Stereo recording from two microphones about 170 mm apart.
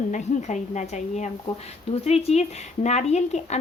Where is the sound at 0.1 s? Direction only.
45° left (ahead or behind).